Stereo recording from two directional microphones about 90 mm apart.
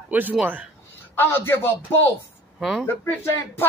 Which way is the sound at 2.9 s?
25° left (ahead or behind).